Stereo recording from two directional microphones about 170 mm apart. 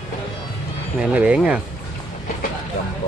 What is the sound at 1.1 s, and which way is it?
Speech, 5° right (ahead or behind).